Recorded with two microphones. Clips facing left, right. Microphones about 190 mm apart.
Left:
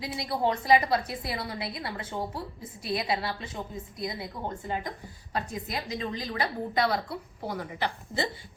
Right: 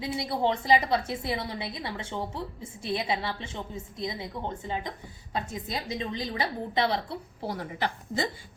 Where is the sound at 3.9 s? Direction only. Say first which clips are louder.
Right 1 dB; 25° right (ahead or behind).